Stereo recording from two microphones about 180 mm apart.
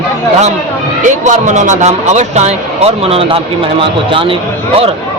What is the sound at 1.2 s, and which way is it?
Speech, 45° right (ahead or behind).